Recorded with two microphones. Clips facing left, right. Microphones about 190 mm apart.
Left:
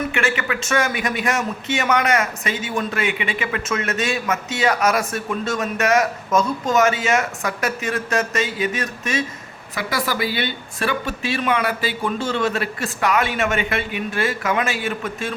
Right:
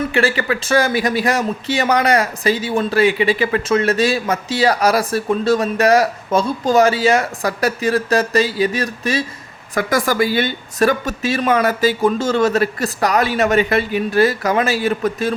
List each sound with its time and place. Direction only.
0.1 s a man's voice: 35° right (ahead or behind)
9.8 s a woman's voice: 45° right (ahead or behind)